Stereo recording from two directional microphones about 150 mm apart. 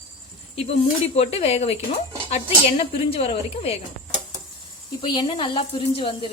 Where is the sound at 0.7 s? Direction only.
45° left (ahead or behind).